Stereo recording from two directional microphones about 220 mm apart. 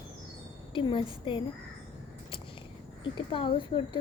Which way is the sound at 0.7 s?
20° left (ahead or behind).